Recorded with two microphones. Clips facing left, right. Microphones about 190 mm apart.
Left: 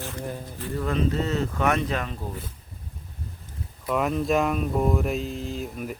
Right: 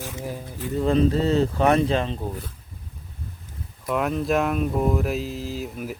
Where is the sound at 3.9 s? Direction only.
Centre (ahead or behind).